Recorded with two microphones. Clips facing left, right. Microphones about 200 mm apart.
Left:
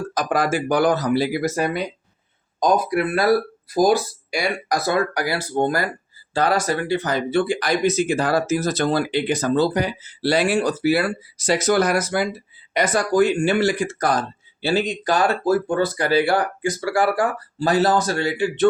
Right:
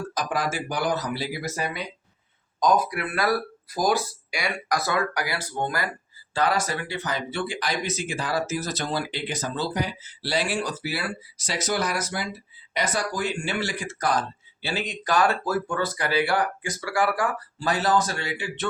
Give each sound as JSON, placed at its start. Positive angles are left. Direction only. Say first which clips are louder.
{"t": 0.1, "sound": "speech", "louder": "left 8 dB", "side_deg": 50}
{"t": 2.6, "sound": "speech", "louder": "left 4 dB", "side_deg": 30}